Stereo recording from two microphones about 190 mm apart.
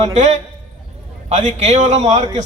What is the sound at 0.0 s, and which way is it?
A man's voice, 35° right (ahead or behind).